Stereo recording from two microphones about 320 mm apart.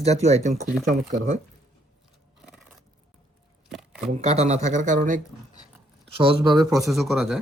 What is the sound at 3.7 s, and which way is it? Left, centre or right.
Chopping, centre.